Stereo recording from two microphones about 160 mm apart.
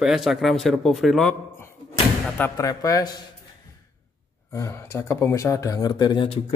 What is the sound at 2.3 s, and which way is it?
Speech, 15° left (ahead or behind).